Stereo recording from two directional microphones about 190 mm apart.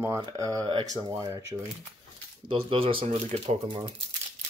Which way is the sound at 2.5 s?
30° right (ahead or behind).